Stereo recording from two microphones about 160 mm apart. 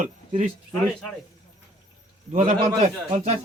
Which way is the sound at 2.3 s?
50° right (ahead or behind).